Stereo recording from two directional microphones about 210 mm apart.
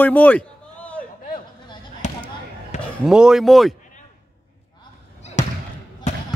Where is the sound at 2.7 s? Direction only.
30° left (ahead or behind).